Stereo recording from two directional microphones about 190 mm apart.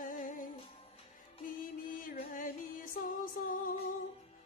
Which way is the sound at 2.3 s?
45° left (ahead or behind).